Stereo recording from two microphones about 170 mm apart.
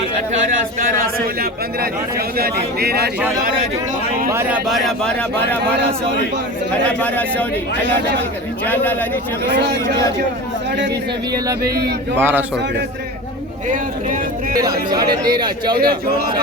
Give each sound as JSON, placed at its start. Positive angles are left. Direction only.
{"t": 0.5, "sound": "speech", "side_deg": -55}
{"t": 3.2, "sound": "speech", "side_deg": -15}
{"t": 6.8, "sound": "speech", "side_deg": 10}
{"t": 8.6, "sound": "speech", "side_deg": 10}
{"t": 9.6, "sound": "speech", "side_deg": -85}
{"t": 11.6, "sound": "speech", "side_deg": -70}
{"t": 12.1, "sound": "speech", "side_deg": -10}
{"t": 13.7, "sound": "speech", "side_deg": -50}
{"t": 14.6, "sound": "speech", "side_deg": -20}